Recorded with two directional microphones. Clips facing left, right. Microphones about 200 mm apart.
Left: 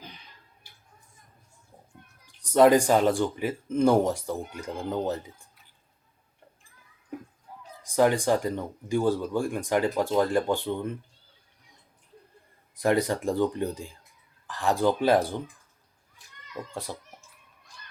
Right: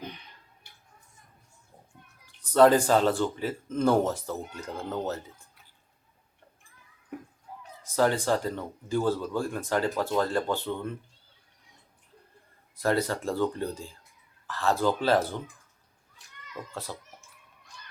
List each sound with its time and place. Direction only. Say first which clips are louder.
2.2 s speech: left 1 dB; 15° left (ahead or behind)
7.9 s speech: left 3 dB; 15° left (ahead or behind)
12.7 s speech: left 3 dB; 15° left (ahead or behind)
16.7 s speech: left 2 dB; 15° left (ahead or behind)